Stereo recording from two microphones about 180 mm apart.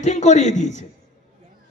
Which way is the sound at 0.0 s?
40° left (ahead or behind).